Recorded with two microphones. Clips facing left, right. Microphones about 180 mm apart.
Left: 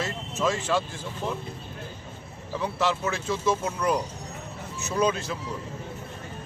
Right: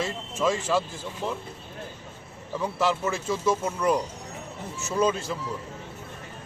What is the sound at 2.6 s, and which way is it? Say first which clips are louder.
Speech: right 1 dB; 5° right (ahead or behind).